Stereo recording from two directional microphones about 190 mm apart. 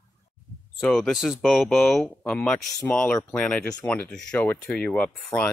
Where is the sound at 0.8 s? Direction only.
5° left (ahead or behind).